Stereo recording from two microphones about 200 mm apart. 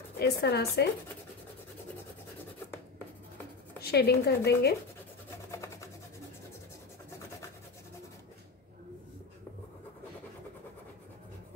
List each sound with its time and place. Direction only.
0.2 s speech: 55° left (ahead or behind)
3.8 s speech: 50° left (ahead or behind)
5.5 s rub: 15° left (ahead or behind)